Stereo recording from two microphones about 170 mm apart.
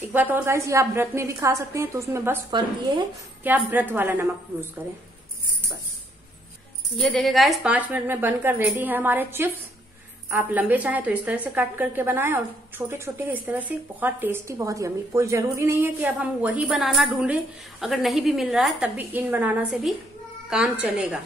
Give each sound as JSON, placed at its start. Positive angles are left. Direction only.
{"t": 0.1, "sound": "a woman's voice", "side_deg": -10}
{"t": 2.5, "sound": "a woman's voice", "side_deg": -25}
{"t": 3.4, "sound": "a woman's voice", "side_deg": -10}
{"t": 7.0, "sound": "a woman's voice", "side_deg": 0}